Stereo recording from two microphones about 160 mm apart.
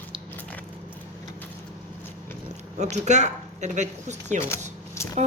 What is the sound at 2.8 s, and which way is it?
A woman's voice, 45° right (ahead or behind).